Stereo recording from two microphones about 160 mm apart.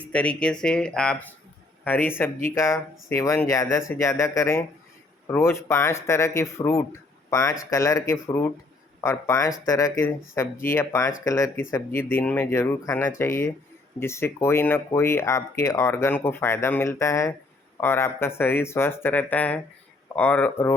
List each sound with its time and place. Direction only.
0.0 s speech: 10° left (ahead or behind)